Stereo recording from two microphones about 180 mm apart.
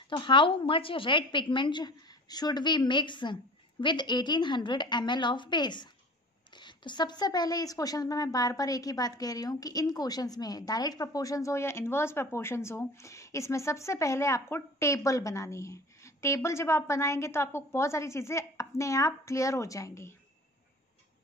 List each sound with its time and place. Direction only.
0.1 s a woman's voice: 25° left (ahead or behind)